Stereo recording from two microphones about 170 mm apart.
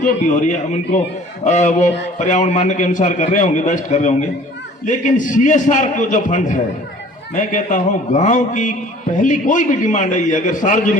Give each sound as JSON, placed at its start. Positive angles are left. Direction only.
{"t": 0.0, "sound": "a man's voice", "side_deg": 45}